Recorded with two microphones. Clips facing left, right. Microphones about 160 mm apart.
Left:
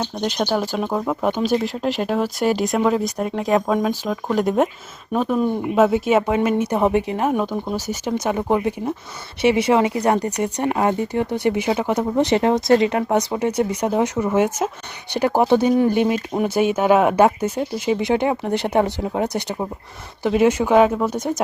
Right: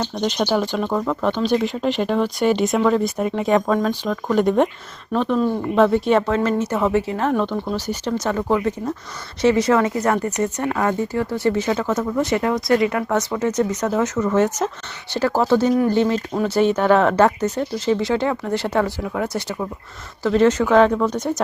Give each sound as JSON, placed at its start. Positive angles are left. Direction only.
{"t": 0.0, "sound": "speech", "side_deg": 10}